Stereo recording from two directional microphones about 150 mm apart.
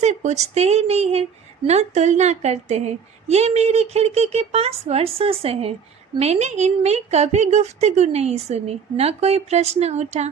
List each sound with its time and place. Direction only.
0.0 s a woman's voice: 50° right (ahead or behind)